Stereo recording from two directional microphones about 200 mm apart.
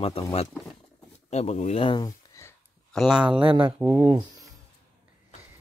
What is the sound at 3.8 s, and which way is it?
Speech, 10° right (ahead or behind).